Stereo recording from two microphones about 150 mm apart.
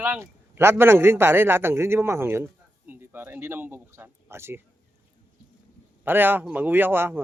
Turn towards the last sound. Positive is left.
turn(degrees=-15)  # may be behind; listen again after turning